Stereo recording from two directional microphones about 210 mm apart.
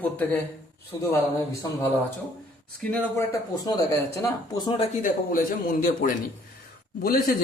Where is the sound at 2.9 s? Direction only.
15° left (ahead or behind).